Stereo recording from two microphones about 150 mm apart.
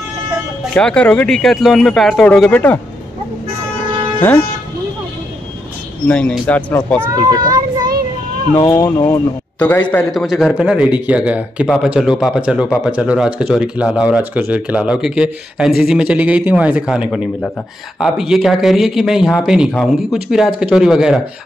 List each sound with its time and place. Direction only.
0.7 s speech: 5° left (ahead or behind)
4.2 s a man's voice: 15° left (ahead or behind)
6.0 s a man's voice: 10° left (ahead or behind)
7.0 s a child's voice: 25° right (ahead or behind)
8.5 s a man's voice: 20° left (ahead or behind)
10.2 s speech: centre (ahead or behind)